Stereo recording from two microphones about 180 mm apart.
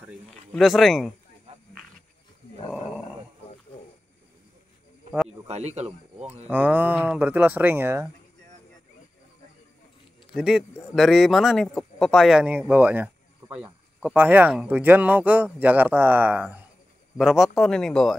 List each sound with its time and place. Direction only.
0.3 s speech: centre (ahead or behind)
5.5 s speech: 40° right (ahead or behind)
6.4 s speech: 10° right (ahead or behind)
10.3 s speech: 5° right (ahead or behind)